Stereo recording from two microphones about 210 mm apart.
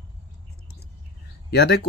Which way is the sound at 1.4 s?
50° left (ahead or behind).